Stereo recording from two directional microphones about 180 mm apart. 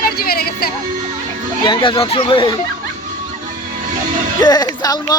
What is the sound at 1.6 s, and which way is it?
Speech, 25° left (ahead or behind).